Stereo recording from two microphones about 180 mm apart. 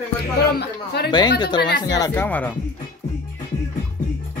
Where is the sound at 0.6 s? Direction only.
65° left (ahead or behind).